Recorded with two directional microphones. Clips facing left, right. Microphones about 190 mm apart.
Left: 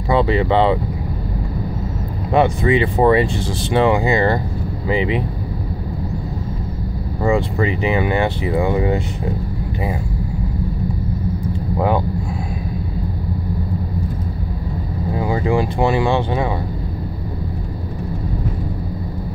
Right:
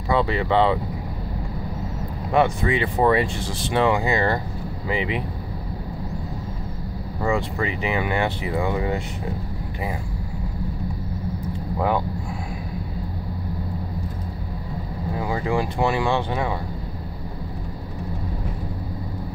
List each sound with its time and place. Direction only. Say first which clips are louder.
0.1 s speech: left 5 dB; 25° left (ahead or behind)
2.3 s speech: left 5 dB; 25° left (ahead or behind)
7.2 s speech: left 6 dB; 25° left (ahead or behind)
15.1 s speech: left 5 dB; 25° left (ahead or behind)